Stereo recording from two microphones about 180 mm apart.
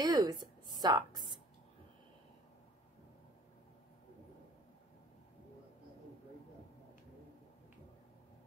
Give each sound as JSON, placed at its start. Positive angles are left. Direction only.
{"t": 0.0, "sound": "a woman's voice", "side_deg": -20}